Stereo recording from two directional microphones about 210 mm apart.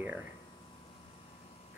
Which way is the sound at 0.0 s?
10° right (ahead or behind).